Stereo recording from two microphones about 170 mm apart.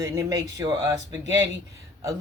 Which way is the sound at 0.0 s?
20° right (ahead or behind).